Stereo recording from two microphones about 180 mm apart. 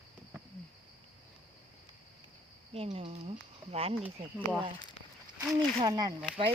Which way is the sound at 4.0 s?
10° right (ahead or behind).